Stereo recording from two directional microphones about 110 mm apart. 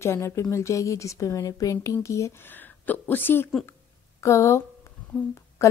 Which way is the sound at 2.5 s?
15° left (ahead or behind).